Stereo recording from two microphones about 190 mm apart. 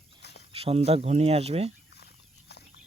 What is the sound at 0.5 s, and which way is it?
Speech, 30° right (ahead or behind).